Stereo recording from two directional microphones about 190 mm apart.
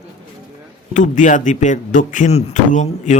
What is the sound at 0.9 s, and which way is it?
Speech, 40° left (ahead or behind).